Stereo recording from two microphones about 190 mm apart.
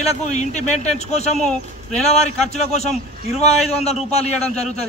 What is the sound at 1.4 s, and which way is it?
Speech, 5° left (ahead or behind).